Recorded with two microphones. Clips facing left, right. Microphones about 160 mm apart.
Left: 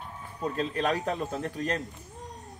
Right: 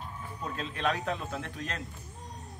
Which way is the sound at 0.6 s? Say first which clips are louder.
Left 3 dB; 40° left (ahead or behind).